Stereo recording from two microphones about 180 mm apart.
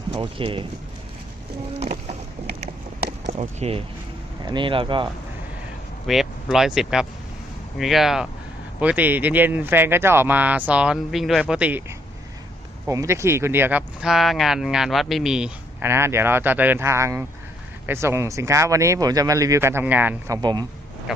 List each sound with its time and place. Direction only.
0.1 s speech: 30° right (ahead or behind)
1.8 s boat: 35° right (ahead or behind)
3.2 s speech: 40° right (ahead or behind)
6.1 s speech: centre (ahead or behind)
12.9 s speech: 15° right (ahead or behind)